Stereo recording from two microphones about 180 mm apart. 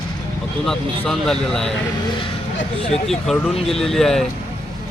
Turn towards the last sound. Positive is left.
turn(degrees=0)  # may be behind; listen again after turning